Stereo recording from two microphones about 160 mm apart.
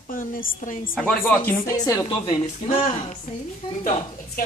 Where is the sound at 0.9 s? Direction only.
5° left (ahead or behind).